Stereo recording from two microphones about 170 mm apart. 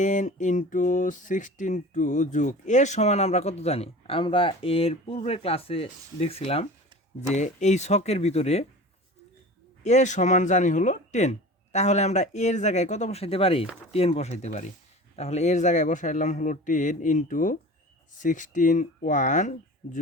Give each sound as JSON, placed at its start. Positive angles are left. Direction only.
{"t": 0.0, "sound": "music", "side_deg": 45}
{"t": 9.8, "sound": "speech", "side_deg": 45}
{"t": 13.9, "sound": "music", "side_deg": 35}
{"t": 15.1, "sound": "speech", "side_deg": 40}